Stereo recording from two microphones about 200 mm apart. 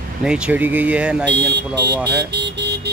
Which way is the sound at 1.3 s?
60° right (ahead or behind).